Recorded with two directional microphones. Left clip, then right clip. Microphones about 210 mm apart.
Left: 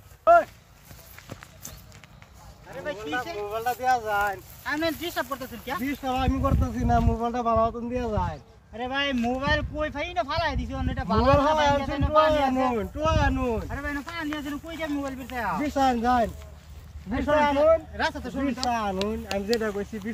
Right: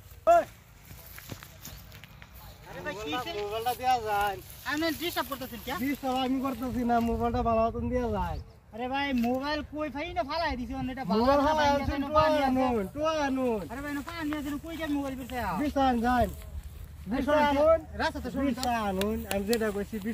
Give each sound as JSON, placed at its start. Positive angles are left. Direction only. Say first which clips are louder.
{"t": 0.2, "sound": "clip-clop", "louder": "left 4 dB", "side_deg": -10}
{"t": 2.8, "sound": "a sound", "louder": "left 4 dB", "side_deg": 25}
{"t": 3.1, "sound": "speech", "louder": "left 2 dB", "side_deg": 15}
{"t": 5.8, "sound": "speech", "louder": "left 2 dB", "side_deg": 5}